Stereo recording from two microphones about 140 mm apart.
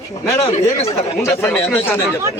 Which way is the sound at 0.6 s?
20° left (ahead or behind).